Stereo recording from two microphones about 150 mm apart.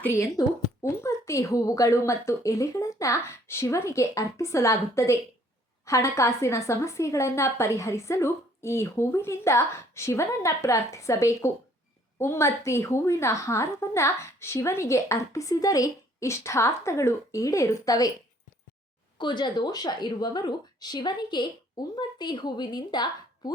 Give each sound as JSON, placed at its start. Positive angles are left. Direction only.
{"t": 0.0, "sound": "a woman's voice", "side_deg": 20}
{"t": 19.2, "sound": "a woman's voice", "side_deg": 30}